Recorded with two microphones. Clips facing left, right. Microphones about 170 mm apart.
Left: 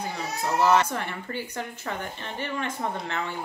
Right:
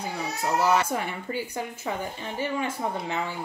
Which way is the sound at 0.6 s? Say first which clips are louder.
Left 2 dB; 10° right (ahead or behind).